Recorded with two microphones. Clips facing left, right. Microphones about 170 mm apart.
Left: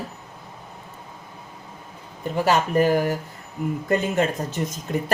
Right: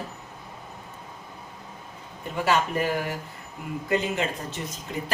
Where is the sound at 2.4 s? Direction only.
40° left (ahead or behind).